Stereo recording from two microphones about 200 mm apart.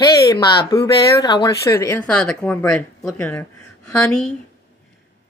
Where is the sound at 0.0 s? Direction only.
15° left (ahead or behind).